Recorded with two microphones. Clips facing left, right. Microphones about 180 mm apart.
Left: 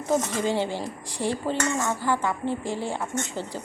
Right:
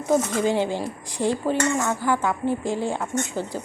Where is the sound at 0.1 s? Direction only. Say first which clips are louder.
Right 3 dB; 15° right (ahead or behind).